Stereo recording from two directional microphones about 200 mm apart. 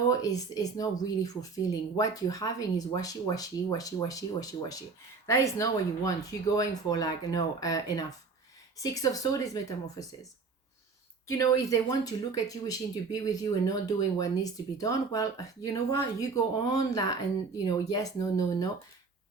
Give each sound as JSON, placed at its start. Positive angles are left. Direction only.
{"t": 0.1, "sound": "speech", "side_deg": 20}
{"t": 11.3, "sound": "speech", "side_deg": 15}